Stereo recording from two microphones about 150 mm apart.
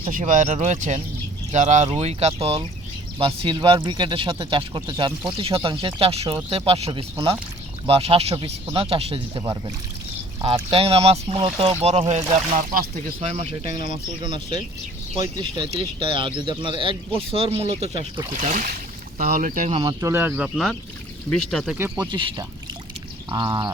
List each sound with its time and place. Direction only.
0.1 s speech: 60° right (ahead or behind); by 2.6 s 45° right (ahead or behind)
3.2 s speech: 30° right (ahead or behind)
15.2 s speech: 30° right (ahead or behind); by 18.0 s 45° right (ahead or behind)
18.3 s speech: 60° right (ahead or behind)
19.7 s speech: 30° right (ahead or behind)
20.0 s speech: 15° right (ahead or behind)
21.3 s speech: 5° left (ahead or behind)
21.8 s speech: 10° right (ahead or behind)
22.1 s speech: 35° right (ahead or behind)